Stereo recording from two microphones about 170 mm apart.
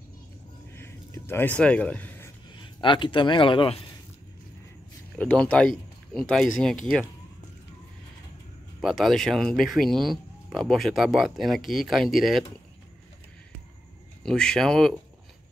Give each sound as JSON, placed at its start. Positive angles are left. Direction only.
{"t": 0.7, "sound": "a sound", "side_deg": 15}
{"t": 2.6, "sound": "a man's voice", "side_deg": 30}
{"t": 5.1, "sound": "speech", "side_deg": 5}
{"t": 8.8, "sound": "speech", "side_deg": 0}
{"t": 14.2, "sound": "speech", "side_deg": 5}